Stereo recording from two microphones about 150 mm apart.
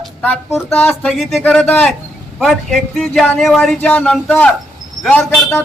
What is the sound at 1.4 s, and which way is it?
A man's voice, 10° left (ahead or behind).